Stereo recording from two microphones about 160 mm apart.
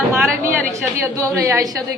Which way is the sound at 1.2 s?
20° right (ahead or behind).